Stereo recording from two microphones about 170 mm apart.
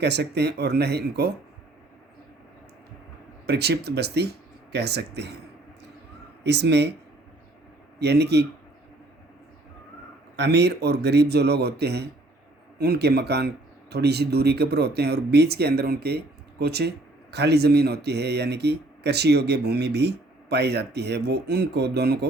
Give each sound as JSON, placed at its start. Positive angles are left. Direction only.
{"t": 0.0, "sound": "speech", "side_deg": -80}
{"t": 3.4, "sound": "speech", "side_deg": -70}
{"t": 6.4, "sound": "speech", "side_deg": -90}
{"t": 7.9, "sound": "speech", "side_deg": -80}
{"t": 10.3, "sound": "speech", "side_deg": -80}